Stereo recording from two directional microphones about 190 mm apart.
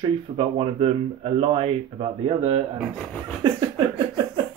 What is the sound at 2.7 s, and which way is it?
Speech, 5° left (ahead or behind).